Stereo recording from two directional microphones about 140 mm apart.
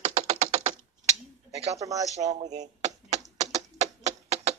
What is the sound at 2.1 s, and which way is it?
Typewriter, 55° right (ahead or behind).